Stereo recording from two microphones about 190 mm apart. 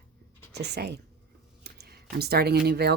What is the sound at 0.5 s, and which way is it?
Speech, 60° right (ahead or behind).